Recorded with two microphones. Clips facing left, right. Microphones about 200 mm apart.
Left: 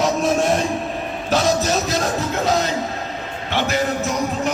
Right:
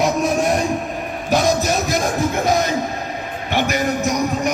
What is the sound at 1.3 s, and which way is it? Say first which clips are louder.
Music: right 1 dB; 15° right (ahead or behind).